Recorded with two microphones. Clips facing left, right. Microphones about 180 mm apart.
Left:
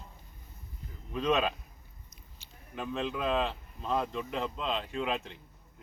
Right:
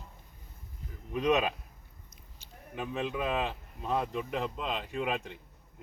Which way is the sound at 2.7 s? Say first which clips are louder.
Even; 10° right (ahead or behind).